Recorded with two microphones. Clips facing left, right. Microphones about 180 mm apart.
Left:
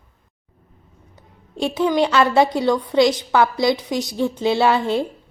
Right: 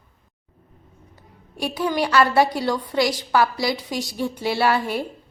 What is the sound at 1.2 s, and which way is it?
A woman's voice, 20° left (ahead or behind).